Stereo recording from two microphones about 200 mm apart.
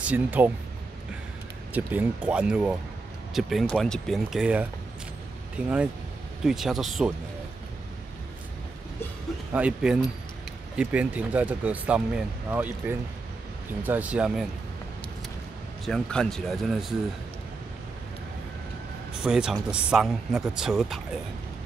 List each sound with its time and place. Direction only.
0.0 s speech: 10° right (ahead or behind)
1.7 s speech: 10° right (ahead or behind)
9.5 s speech: 5° right (ahead or behind)
15.8 s speech: 5° left (ahead or behind)
19.2 s speech: 5° right (ahead or behind)